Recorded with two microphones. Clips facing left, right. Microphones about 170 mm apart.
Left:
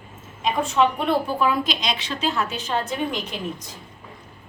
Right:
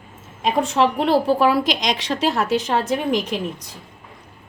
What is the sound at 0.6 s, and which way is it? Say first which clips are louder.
A woman's voice: right 1 dB; 75° right (ahead or behind).